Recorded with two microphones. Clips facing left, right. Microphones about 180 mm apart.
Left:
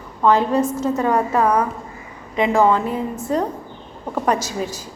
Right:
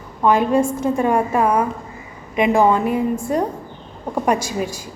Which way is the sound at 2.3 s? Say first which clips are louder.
Right 1 dB; 15° right (ahead or behind).